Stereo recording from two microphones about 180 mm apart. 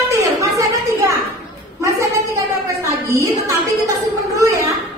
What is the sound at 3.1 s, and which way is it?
Speech, 15° right (ahead or behind).